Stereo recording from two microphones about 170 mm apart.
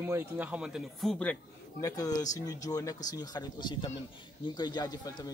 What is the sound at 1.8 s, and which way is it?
Speech, 20° left (ahead or behind).